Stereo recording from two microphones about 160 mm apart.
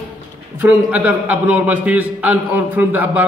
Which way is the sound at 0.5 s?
10° right (ahead or behind).